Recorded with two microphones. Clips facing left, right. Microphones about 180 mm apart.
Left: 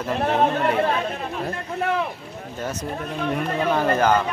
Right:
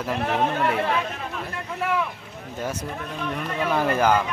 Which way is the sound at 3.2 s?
35° left (ahead or behind).